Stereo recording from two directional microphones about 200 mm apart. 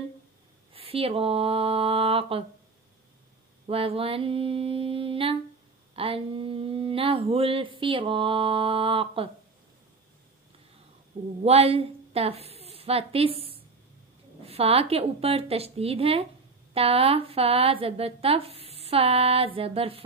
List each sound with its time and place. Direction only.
0.7 s speech: 30° right (ahead or behind)
3.6 s speech: 30° right (ahead or behind)
11.4 s a woman's voice: 30° right (ahead or behind)